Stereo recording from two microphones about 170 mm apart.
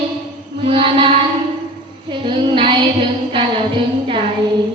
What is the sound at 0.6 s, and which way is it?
Music, 30° right (ahead or behind).